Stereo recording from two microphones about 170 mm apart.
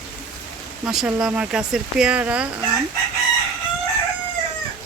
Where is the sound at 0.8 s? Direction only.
5° right (ahead or behind).